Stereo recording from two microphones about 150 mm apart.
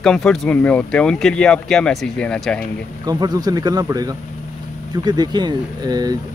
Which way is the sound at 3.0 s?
25° right (ahead or behind).